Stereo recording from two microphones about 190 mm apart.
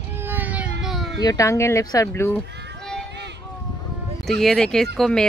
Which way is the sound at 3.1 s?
65° right (ahead or behind).